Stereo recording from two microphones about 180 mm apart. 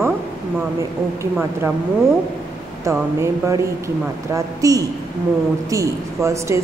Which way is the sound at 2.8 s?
15° right (ahead or behind).